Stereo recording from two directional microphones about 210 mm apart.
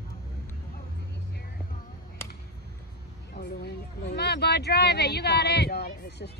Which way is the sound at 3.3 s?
50° left (ahead or behind).